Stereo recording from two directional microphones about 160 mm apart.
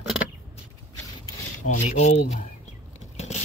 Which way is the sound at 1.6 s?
45° left (ahead or behind).